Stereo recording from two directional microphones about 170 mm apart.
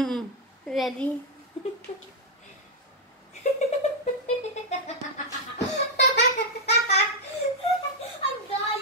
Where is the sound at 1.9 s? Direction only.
40° left (ahead or behind).